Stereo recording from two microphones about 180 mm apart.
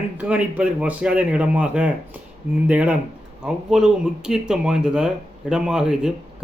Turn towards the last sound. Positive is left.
turn(degrees=-5)  # may be behind; listen again after turning